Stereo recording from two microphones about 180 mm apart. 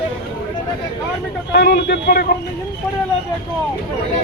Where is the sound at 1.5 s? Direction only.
60° left (ahead or behind).